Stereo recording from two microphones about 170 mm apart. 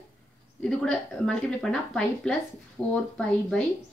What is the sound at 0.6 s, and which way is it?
Speech, 5° left (ahead or behind).